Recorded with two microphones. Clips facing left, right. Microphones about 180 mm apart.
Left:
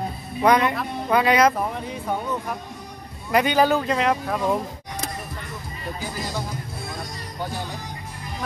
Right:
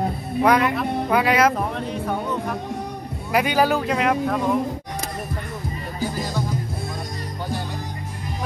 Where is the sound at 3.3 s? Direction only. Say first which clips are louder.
Left 1 dB; 5° right (ahead or behind).